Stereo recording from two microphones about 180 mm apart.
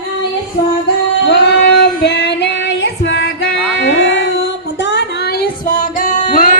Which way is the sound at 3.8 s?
90° left.